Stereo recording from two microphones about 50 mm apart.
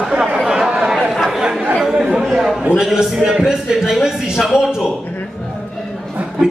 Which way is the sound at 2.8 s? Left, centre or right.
Centre.